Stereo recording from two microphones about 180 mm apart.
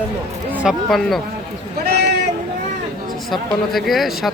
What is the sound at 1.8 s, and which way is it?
Sheep, 65° right (ahead or behind).